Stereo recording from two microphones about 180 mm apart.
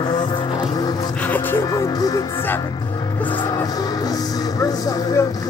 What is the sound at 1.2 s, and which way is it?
Music, 10° left (ahead or behind).